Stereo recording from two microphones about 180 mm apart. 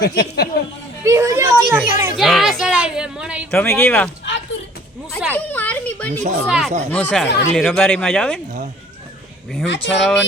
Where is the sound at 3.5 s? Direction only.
10° left (ahead or behind).